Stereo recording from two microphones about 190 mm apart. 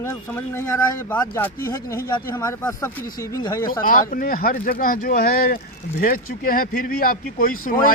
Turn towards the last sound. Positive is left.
turn(degrees=50)  # may be behind; listen again after turning